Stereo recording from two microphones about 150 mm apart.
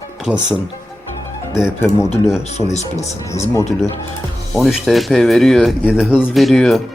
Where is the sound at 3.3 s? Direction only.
20° left (ahead or behind).